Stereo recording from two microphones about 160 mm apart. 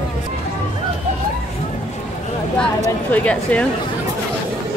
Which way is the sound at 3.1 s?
10° left (ahead or behind).